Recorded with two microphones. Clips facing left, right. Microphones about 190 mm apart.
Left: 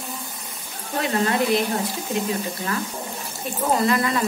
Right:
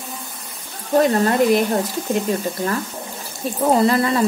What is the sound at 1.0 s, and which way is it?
Speech, 40° right (ahead or behind).